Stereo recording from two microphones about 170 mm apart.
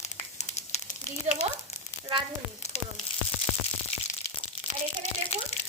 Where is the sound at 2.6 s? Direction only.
40° left (ahead or behind).